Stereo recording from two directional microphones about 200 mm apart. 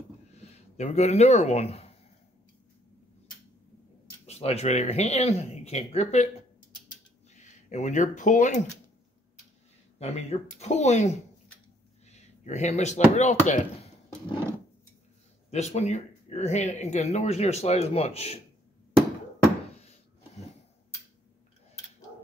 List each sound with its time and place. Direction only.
0.4 s speech: 30° left (ahead or behind)
4.3 s speech: 30° left (ahead or behind)
9.9 s speech: 35° left (ahead or behind)
12.1 s a sound: 35° left (ahead or behind)
13.1 s speech: 35° left (ahead or behind)
15.5 s speech: 35° left (ahead or behind)